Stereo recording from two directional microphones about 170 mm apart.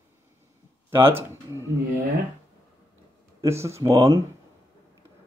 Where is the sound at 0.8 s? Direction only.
15° right (ahead or behind).